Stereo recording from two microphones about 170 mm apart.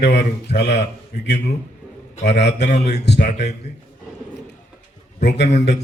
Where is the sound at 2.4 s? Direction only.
85° left.